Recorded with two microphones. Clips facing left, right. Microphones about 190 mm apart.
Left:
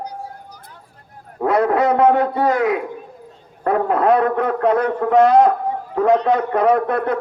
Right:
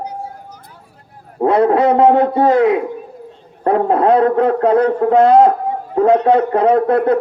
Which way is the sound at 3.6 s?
30° right (ahead or behind).